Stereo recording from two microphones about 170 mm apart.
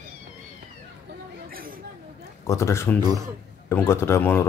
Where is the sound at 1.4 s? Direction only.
60° right (ahead or behind).